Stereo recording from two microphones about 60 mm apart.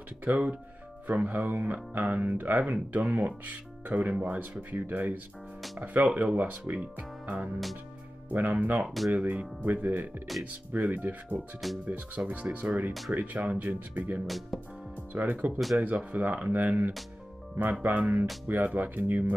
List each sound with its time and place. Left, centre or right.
0.2 s speech: right
8.8 s speech: centre
9.1 s speech: right
14.2 s speech: centre
15.1 s speech: right